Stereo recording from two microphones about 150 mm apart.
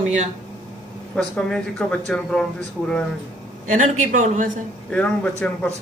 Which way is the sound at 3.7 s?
55° right (ahead or behind).